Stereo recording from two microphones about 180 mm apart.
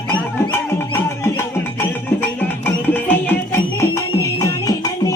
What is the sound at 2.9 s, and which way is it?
Music, 10° left (ahead or behind).